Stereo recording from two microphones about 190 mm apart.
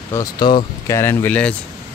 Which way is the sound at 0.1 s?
20° left (ahead or behind).